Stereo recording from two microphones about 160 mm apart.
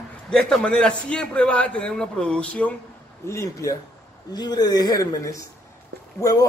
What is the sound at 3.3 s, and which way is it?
A man's voice, 20° left (ahead or behind).